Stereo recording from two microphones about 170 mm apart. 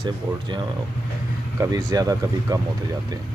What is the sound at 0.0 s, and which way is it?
Speech, 25° right (ahead or behind).